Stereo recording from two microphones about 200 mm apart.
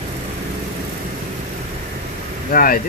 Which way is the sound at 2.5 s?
45° left (ahead or behind).